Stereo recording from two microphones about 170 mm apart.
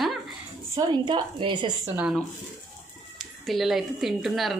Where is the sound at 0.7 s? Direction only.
25° right (ahead or behind).